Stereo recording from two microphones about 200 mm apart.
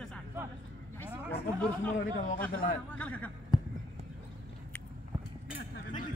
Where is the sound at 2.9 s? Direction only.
5° left (ahead or behind).